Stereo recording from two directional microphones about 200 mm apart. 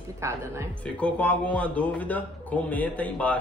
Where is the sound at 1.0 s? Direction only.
5° left (ahead or behind).